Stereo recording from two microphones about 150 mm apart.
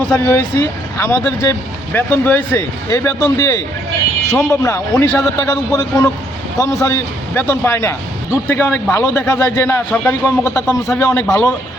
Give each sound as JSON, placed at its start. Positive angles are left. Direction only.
{"t": 0.1, "sound": "a man's voice", "side_deg": 15}